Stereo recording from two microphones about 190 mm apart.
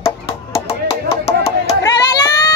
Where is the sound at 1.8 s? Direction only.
20° left (ahead or behind).